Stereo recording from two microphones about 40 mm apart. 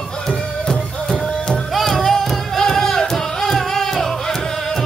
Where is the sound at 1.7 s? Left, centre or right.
Centre.